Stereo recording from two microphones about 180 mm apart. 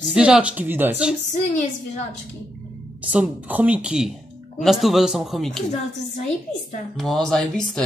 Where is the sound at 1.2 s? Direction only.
45° left (ahead or behind).